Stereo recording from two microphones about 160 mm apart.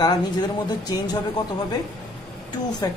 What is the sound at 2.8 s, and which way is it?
Speech, 20° left (ahead or behind).